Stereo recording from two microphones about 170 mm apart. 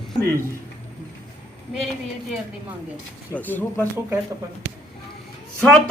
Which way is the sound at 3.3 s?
10° left (ahead or behind).